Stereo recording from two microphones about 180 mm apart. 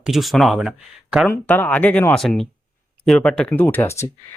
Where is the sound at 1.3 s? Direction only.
10° left (ahead or behind).